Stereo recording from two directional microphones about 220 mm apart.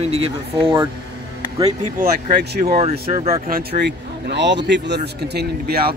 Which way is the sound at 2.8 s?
30° right (ahead or behind).